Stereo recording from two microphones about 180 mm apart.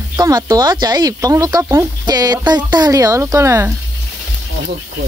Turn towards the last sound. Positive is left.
turn(degrees=-15)  # may be behind; listen again after turning